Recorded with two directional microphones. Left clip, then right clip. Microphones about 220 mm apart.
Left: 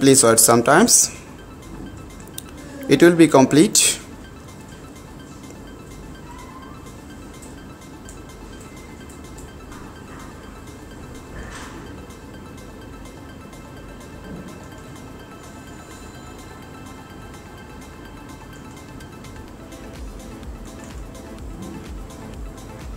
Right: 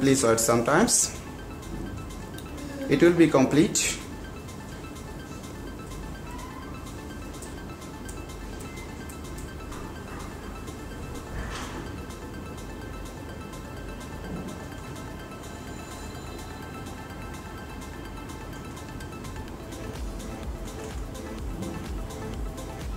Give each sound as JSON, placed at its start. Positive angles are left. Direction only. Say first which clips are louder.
{"t": 0.0, "sound": "speech", "louder": "left 8 dB", "side_deg": 40}
{"t": 2.9, "sound": "speech", "louder": "left 7 dB", "side_deg": 40}